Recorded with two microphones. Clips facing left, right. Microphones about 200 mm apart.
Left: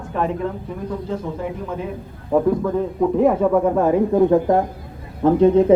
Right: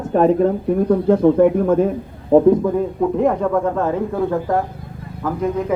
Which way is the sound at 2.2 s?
25° right (ahead or behind).